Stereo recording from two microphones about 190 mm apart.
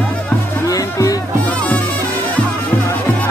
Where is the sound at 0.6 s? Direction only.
20° left (ahead or behind).